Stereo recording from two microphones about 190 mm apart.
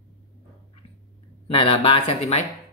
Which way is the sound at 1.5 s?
30° left (ahead or behind).